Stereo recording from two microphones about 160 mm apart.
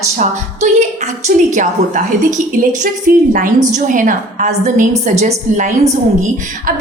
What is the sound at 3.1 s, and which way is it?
A woman's voice, 60° right (ahead or behind).